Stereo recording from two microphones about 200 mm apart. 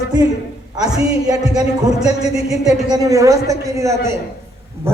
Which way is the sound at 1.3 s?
20° right (ahead or behind).